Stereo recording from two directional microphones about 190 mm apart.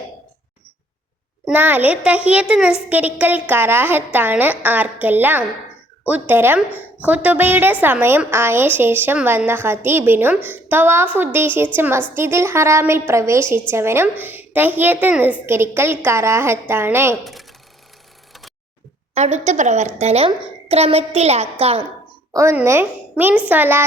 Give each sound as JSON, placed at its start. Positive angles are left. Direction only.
{"t": 1.5, "sound": "a woman's voice", "side_deg": -10}
{"t": 17.2, "sound": "speech", "side_deg": 0}
{"t": 19.1, "sound": "a woman's voice", "side_deg": -35}
{"t": 22.3, "sound": "a woman's voice", "side_deg": -15}